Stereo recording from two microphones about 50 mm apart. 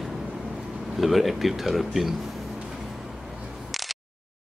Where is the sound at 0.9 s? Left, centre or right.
Centre.